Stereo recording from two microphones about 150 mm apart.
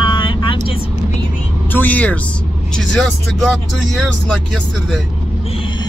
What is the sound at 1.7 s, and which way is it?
Speech, 10° left (ahead or behind).